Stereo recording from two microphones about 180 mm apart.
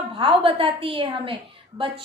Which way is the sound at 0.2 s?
30° right (ahead or behind).